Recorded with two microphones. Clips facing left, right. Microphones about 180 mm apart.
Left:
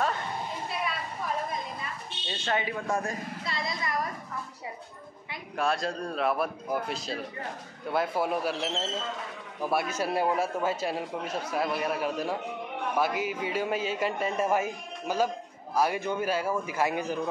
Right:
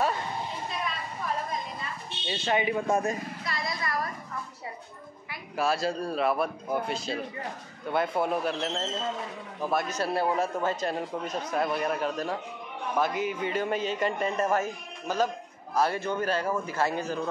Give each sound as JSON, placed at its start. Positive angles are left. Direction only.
{"t": 2.2, "sound": "speech", "side_deg": -10}
{"t": 3.4, "sound": "a woman's voice", "side_deg": 25}
{"t": 5.6, "sound": "a man's voice", "side_deg": -5}